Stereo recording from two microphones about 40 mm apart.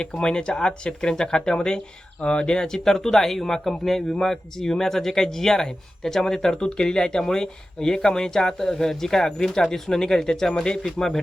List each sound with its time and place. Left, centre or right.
0.0 s speech: left